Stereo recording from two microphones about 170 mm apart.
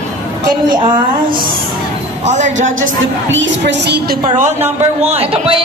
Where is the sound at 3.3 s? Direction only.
90° right.